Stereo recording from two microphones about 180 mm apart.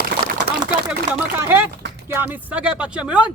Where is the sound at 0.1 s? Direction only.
60° right (ahead or behind).